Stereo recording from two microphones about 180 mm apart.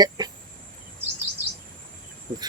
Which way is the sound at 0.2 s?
20° right (ahead or behind).